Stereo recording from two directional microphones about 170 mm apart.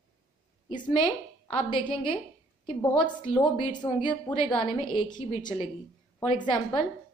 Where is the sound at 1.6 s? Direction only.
30° left (ahead or behind).